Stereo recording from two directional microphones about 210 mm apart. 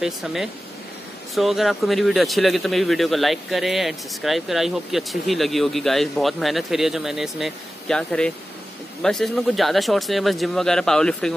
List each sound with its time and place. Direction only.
0.0 s speech: centre (ahead or behind)